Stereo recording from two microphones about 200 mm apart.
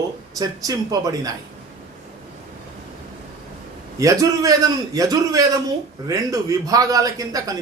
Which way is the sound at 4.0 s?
15° right (ahead or behind).